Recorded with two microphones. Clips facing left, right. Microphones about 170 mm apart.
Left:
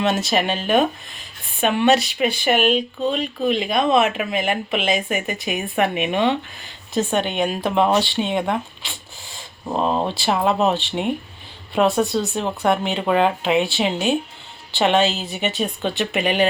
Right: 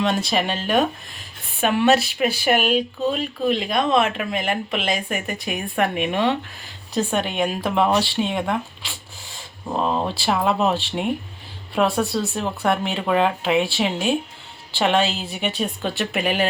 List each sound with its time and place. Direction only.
0.3 s speech: centre (ahead or behind)